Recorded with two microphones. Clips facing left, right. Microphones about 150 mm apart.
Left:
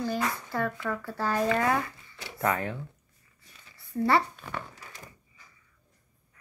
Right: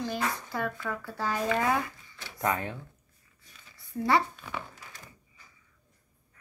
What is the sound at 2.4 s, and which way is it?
Speech, 20° right (ahead or behind).